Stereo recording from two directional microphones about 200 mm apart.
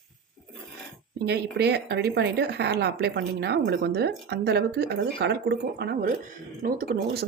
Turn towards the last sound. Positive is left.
turn(degrees=-50)  # may be behind; listen again after turning